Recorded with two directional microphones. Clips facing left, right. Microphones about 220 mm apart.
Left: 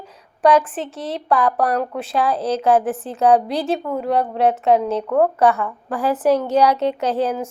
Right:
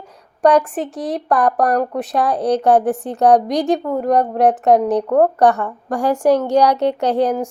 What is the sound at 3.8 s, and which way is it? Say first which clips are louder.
A woman's voice: right 4 dB; 40° right (ahead or behind).